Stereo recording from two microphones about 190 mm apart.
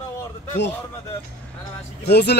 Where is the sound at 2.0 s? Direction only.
60° left (ahead or behind).